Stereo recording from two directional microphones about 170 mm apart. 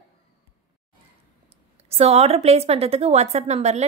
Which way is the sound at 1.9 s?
35° right (ahead or behind).